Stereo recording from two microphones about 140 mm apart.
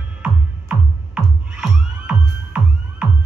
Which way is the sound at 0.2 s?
10° right (ahead or behind).